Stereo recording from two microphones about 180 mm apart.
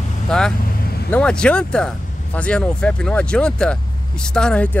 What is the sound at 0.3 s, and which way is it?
Speech, 5° left (ahead or behind).